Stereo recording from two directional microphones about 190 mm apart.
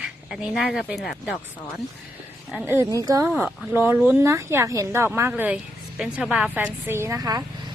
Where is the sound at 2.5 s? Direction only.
5° right (ahead or behind).